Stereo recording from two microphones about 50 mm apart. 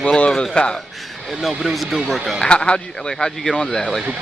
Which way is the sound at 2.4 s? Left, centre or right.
Centre.